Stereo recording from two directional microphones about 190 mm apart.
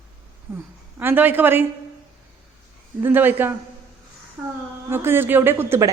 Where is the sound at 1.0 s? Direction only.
10° right (ahead or behind).